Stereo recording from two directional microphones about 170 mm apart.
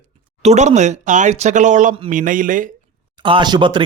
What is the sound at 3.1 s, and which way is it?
Speech, 30° right (ahead or behind).